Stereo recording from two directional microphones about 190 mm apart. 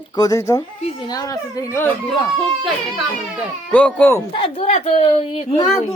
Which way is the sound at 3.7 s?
5° left (ahead or behind).